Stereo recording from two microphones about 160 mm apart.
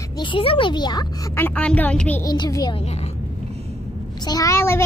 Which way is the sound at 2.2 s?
25° left (ahead or behind).